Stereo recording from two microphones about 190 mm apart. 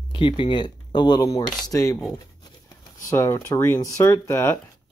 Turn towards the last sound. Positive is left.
turn(degrees=15)  # may be behind; listen again after turning